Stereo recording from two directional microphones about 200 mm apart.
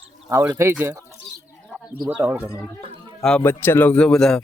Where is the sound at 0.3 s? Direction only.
15° right (ahead or behind).